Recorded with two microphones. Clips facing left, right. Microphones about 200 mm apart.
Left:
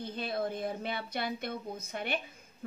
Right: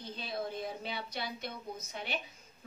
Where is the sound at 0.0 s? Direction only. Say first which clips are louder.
Left 5 dB; 55° left (ahead or behind).